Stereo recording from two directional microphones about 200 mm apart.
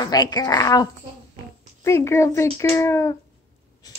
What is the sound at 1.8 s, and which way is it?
Speech, 15° left (ahead or behind).